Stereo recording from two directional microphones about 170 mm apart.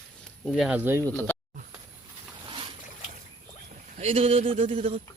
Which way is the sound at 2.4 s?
30° right (ahead or behind).